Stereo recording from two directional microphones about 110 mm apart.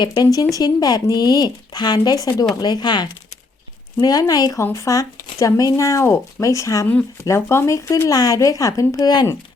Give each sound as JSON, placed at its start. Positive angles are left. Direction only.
{"t": 0.0, "sound": "speech", "side_deg": 40}